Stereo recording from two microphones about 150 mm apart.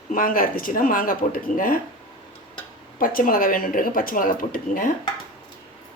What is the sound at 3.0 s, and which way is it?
Speech, 70° left (ahead or behind).